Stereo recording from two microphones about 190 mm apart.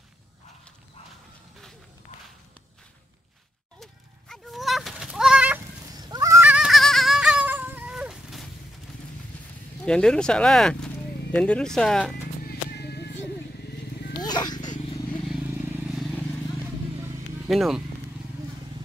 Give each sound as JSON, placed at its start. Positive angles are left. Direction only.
{"t": 3.8, "sound": "sheep", "side_deg": 0}
{"t": 5.9, "sound": "a sound", "side_deg": -20}
{"t": 9.8, "sound": "speech", "side_deg": 5}
{"t": 12.4, "sound": "a sound", "side_deg": 60}
{"t": 14.2, "sound": "roaring cats", "side_deg": 20}
{"t": 15.0, "sound": "vehicle", "side_deg": 0}
{"t": 17.5, "sound": "speech", "side_deg": 0}